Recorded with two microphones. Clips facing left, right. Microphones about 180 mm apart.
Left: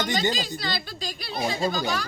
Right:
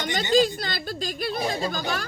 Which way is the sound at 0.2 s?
50° right (ahead or behind).